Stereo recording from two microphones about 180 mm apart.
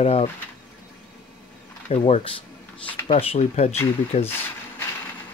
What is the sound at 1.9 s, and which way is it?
Speech, 35° left (ahead or behind).